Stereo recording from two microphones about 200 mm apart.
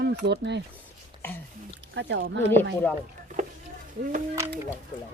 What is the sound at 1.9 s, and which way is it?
Speech, 65° right (ahead or behind).